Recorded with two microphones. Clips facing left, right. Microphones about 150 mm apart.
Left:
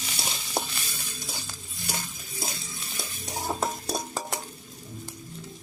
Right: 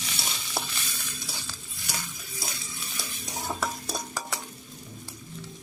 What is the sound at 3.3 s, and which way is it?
Stir, 30° left (ahead or behind).